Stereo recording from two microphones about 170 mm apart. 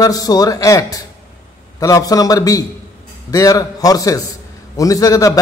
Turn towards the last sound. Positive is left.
turn(degrees=20)  # may be behind; listen again after turning